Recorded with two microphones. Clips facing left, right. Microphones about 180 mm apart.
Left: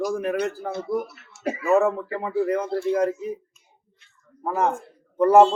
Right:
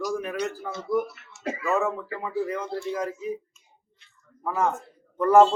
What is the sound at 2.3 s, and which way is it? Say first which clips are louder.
Speech: left 6 dB; 55° left (ahead or behind).